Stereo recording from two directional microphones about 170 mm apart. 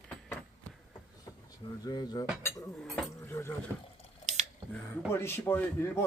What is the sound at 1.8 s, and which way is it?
Speech, 25° left (ahead or behind).